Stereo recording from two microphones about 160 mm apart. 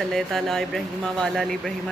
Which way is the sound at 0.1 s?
5° left (ahead or behind).